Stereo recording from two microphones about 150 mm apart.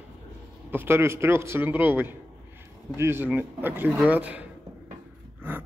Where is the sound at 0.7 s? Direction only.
15° right (ahead or behind).